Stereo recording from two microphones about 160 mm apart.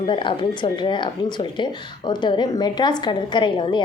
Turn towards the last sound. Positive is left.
turn(degrees=30)  # may be behind; listen again after turning